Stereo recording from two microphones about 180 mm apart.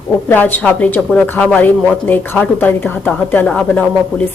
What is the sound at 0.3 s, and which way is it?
Speech, 10° left (ahead or behind).